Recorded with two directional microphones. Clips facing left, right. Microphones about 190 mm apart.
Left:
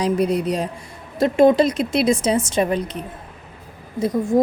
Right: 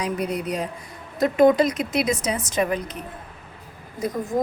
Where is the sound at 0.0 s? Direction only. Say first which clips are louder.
Left 7 dB; 30° left (ahead or behind).